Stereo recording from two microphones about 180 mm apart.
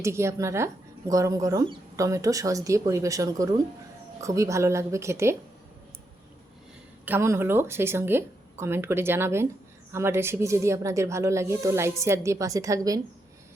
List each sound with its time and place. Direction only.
0.0 s speech: 15° right (ahead or behind)
7.0 s speech: 15° right (ahead or behind)